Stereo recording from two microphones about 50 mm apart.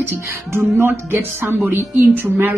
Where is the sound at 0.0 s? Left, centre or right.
Right.